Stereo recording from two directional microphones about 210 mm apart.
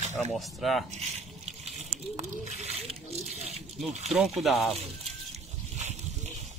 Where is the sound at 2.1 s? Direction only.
30° right (ahead or behind).